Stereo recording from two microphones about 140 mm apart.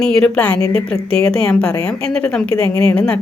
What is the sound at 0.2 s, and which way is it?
A woman's voice, 10° left (ahead or behind).